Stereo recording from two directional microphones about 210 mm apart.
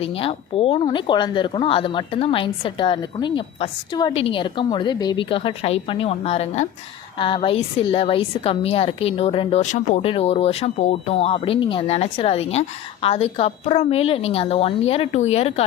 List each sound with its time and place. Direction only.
0.0 s a woman's voice: 25° left (ahead or behind)